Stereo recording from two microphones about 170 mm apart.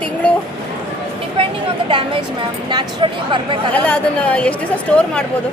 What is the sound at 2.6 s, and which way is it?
Speech, 25° right (ahead or behind).